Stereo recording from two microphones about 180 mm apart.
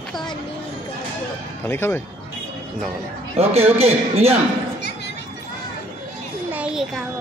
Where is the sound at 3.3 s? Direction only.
35° right (ahead or behind).